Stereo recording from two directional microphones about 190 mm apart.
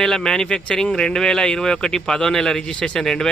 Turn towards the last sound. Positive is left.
turn(degrees=5)  # may be behind; listen again after turning